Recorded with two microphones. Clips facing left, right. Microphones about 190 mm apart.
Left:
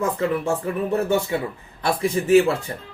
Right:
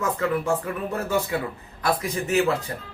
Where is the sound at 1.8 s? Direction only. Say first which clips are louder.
Left 3 dB; 30° left (ahead or behind).